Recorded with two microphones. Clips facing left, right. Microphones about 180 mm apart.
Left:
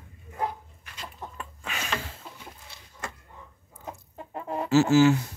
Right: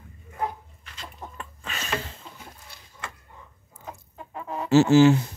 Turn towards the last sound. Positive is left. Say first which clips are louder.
# right 3 dB
turn(degrees=-25)  # may be behind; listen again after turning